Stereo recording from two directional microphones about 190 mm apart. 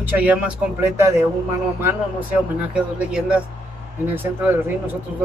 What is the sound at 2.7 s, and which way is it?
Speech, 5° right (ahead or behind).